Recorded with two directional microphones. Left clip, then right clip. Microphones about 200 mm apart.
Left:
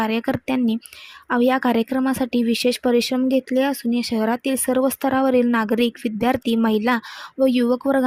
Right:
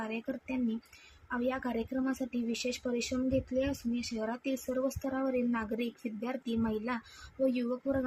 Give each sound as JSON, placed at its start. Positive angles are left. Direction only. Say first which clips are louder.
{"t": 0.0, "sound": "speech", "louder": "left 16 dB", "side_deg": 55}